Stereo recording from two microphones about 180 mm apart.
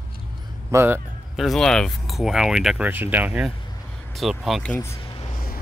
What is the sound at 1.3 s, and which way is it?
Speech, centre (ahead or behind).